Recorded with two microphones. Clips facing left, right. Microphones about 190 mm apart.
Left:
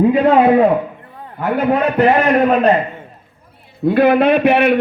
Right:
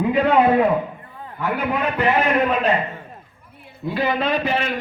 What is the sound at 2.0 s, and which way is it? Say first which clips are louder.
Speech: left 5 dB; 40° left (ahead or behind).